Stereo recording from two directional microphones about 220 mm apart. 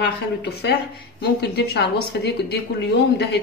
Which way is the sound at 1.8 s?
50° left (ahead or behind).